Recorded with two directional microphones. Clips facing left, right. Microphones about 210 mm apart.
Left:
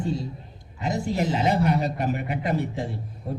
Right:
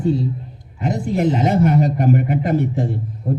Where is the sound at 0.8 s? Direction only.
50° right (ahead or behind).